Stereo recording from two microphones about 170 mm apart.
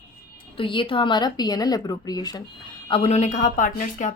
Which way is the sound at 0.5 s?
30° left (ahead or behind).